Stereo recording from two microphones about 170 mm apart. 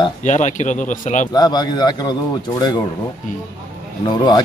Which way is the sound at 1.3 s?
25° left (ahead or behind).